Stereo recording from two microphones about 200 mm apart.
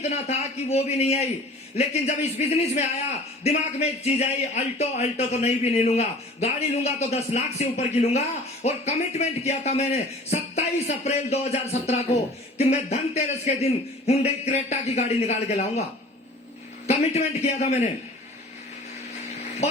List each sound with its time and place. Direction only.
0.0 s speech: 35° left (ahead or behind)
16.8 s speech: 35° left (ahead or behind)